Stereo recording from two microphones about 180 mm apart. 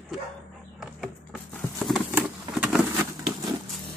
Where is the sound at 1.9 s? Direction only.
5° right (ahead or behind).